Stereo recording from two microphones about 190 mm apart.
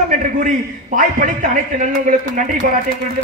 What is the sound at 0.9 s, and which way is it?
Speech, 45° right (ahead or behind).